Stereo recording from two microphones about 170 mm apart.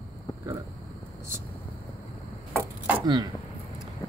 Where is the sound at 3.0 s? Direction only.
25° right (ahead or behind).